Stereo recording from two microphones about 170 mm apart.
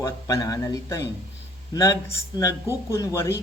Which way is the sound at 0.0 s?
20° left (ahead or behind).